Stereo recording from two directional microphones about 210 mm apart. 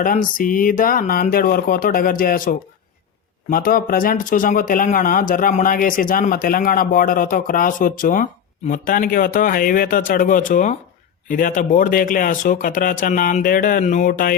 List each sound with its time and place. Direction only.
0.0 s speech: 40° left (ahead or behind)